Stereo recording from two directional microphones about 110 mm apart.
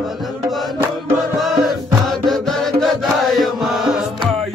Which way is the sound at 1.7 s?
Centre (ahead or behind).